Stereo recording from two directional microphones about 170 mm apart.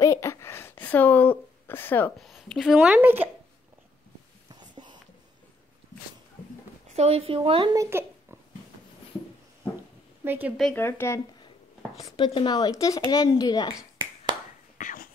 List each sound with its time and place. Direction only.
0.0 s a sound: 15° left (ahead or behind)
2.2 s a woman's voice: centre (ahead or behind)
4.5 s a sound: 25° right (ahead or behind)
6.9 s a woman's voice: 40° right (ahead or behind)
7.8 s a sound: 15° right (ahead or behind)
10.2 s a woman's voice: 10° right (ahead or behind)
10.6 s speech: 10° left (ahead or behind)
12.3 s speech: 25° left (ahead or behind)
14.8 s whispering: 50° left (ahead or behind)